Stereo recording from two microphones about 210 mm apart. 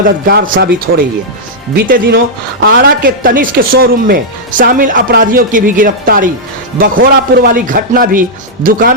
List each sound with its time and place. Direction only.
0.3 s a man's voice: 45° right (ahead or behind)